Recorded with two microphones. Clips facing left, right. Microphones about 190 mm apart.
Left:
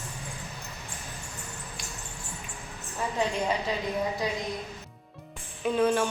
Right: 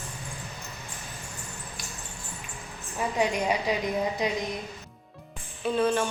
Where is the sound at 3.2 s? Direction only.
15° right (ahead or behind).